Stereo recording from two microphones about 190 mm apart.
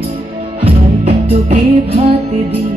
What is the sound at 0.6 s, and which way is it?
Music, 30° right (ahead or behind).